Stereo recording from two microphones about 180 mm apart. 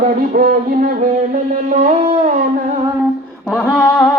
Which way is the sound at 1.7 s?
40° right (ahead or behind).